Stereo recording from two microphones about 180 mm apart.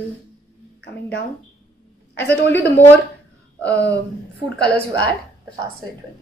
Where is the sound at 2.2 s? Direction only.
10° left (ahead or behind).